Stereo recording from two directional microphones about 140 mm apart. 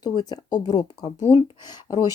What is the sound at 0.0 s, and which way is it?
Speech, 30° left (ahead or behind).